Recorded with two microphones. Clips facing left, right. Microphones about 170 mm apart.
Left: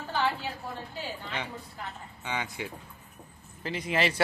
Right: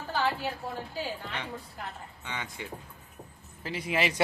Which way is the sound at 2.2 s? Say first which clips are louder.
Left 5 dB; 10° left (ahead or behind).